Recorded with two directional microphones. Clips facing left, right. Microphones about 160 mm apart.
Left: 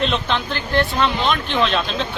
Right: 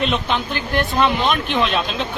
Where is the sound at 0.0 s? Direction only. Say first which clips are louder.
Even; 5° right (ahead or behind).